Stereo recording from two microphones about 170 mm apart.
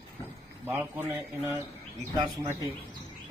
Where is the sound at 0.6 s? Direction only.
10° right (ahead or behind).